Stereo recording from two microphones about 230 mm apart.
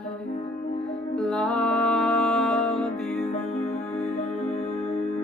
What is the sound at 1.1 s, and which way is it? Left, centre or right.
Music, centre.